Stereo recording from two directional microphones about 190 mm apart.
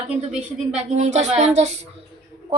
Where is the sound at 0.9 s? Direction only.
40° right (ahead or behind).